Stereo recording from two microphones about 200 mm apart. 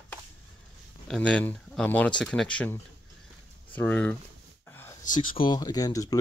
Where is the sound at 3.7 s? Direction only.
10° left (ahead or behind).